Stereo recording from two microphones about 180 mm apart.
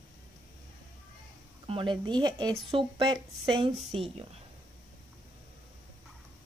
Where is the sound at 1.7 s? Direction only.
25° right (ahead or behind).